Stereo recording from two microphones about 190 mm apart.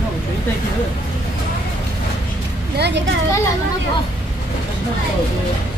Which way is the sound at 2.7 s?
65° right (ahead or behind).